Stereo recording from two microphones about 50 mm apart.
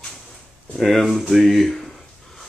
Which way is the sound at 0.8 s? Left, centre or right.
Centre.